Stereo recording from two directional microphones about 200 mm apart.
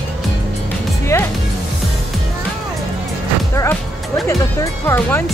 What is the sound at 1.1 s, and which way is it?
Speech, 15° left (ahead or behind).